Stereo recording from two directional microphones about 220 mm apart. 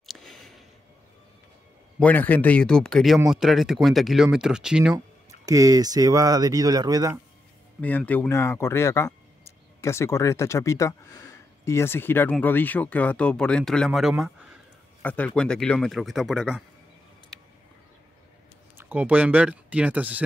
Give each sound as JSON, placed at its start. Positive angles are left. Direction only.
{"t": 0.0, "sound": "a sound", "side_deg": 0}
{"t": 2.0, "sound": "speech", "side_deg": 5}
{"t": 5.4, "sound": "speech", "side_deg": -15}
{"t": 7.8, "sound": "speech", "side_deg": 5}
{"t": 15.0, "sound": "speech", "side_deg": 5}
{"t": 18.8, "sound": "speech", "side_deg": -10}